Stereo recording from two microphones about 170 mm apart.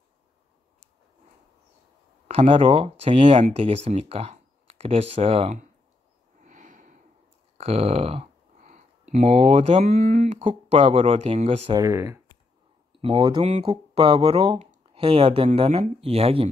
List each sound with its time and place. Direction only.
2.2 s speech: 35° right (ahead or behind)
6.4 s a sound: 50° right (ahead or behind)
7.5 s speech: 35° right (ahead or behind)
9.8 s speech: 55° right (ahead or behind)
10.4 s speech: 35° right (ahead or behind)
11.7 s speech: 20° right (ahead or behind)
13.0 s speech: 30° right (ahead or behind)